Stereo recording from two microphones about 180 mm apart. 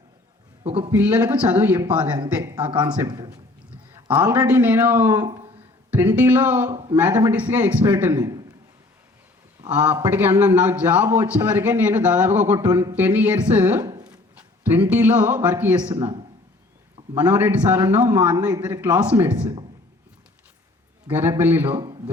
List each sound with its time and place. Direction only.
0.8 s a man's voice: 10° right (ahead or behind)
9.8 s a man's voice: 10° right (ahead or behind)
17.2 s a man's voice: 10° right (ahead or behind)
21.1 s a man's voice: 10° right (ahead or behind)